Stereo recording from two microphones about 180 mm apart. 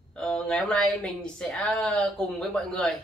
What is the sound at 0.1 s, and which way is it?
A woman's voice, 5° left (ahead or behind).